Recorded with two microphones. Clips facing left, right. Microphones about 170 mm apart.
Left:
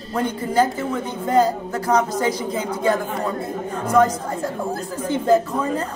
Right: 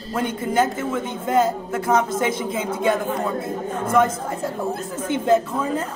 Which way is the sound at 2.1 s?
25° right (ahead or behind).